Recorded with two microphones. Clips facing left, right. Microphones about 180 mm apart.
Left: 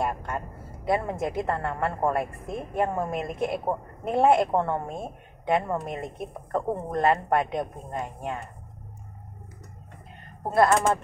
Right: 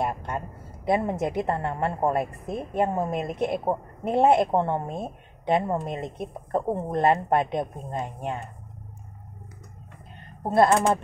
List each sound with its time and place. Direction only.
0.8 s a woman's voice: 20° right (ahead or behind)
10.5 s a woman's voice: 25° right (ahead or behind)